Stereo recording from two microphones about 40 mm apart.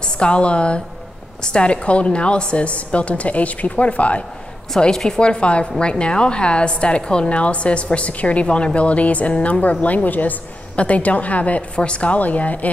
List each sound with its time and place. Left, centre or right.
0.0 s a woman's voice: left
4.7 s a woman's voice: centre; by 12.7 s left